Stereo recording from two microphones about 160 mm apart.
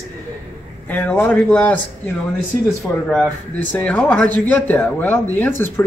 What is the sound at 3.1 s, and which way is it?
Speech, 10° left (ahead or behind).